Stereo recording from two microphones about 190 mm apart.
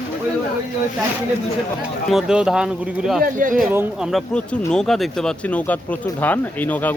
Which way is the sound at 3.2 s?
45° right (ahead or behind).